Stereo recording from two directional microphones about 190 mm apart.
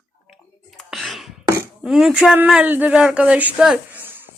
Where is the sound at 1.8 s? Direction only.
Centre (ahead or behind).